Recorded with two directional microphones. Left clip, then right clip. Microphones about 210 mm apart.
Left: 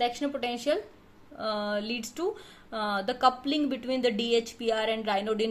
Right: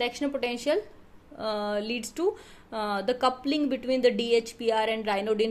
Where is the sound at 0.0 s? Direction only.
20° right (ahead or behind).